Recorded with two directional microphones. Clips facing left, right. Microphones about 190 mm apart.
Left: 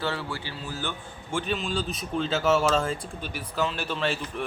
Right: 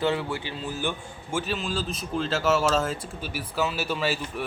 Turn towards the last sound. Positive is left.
turn(degrees=-5)  # may be behind; listen again after turning